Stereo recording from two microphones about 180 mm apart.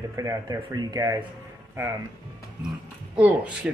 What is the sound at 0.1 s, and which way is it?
Speech, 15° right (ahead or behind).